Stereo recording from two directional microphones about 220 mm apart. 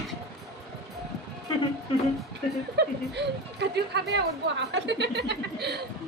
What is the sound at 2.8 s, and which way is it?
Speech, 50° right (ahead or behind).